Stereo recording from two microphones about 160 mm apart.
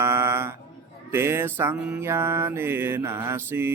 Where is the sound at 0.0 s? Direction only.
15° right (ahead or behind).